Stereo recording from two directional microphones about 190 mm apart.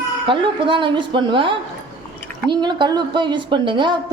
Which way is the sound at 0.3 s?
25° right (ahead or behind).